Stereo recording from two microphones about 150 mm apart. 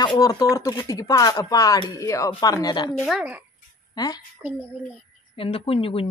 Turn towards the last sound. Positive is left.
turn(degrees=40)  # may be behind; listen again after turning